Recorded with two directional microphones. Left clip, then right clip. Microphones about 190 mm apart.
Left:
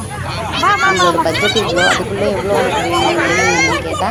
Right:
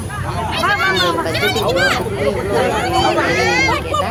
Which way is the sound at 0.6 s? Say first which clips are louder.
Left 4 dB; 40° left (ahead or behind).